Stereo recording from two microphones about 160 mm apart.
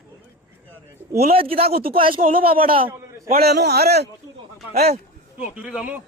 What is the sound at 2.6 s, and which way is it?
Speech, 35° right (ahead or behind).